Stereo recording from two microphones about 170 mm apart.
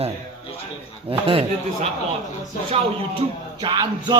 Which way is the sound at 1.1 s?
30° right (ahead or behind).